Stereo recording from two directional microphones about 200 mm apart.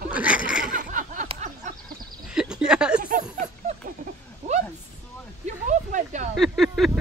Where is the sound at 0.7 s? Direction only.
40° right (ahead or behind).